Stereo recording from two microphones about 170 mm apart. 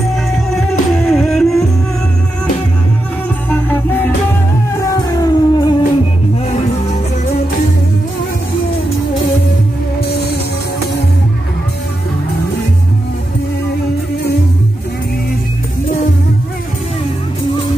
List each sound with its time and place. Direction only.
0.1 s music: centre (ahead or behind)
3.4 s music: 10° left (ahead or behind)